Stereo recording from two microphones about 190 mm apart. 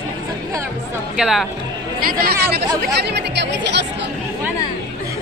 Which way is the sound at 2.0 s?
50° right (ahead or behind).